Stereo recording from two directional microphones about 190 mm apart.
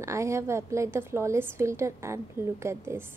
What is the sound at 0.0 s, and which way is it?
A woman's voice, 15° right (ahead or behind).